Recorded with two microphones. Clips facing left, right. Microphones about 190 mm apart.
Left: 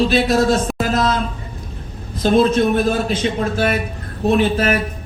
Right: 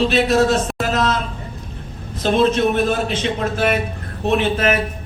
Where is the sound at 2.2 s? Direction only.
40° left (ahead or behind).